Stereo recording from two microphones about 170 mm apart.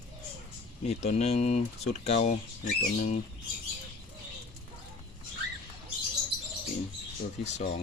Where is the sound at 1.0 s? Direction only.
40° left (ahead or behind).